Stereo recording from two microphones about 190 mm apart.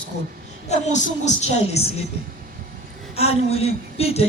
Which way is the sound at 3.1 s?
30° left (ahead or behind).